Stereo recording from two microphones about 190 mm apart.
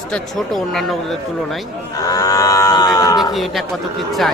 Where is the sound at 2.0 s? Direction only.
20° left (ahead or behind).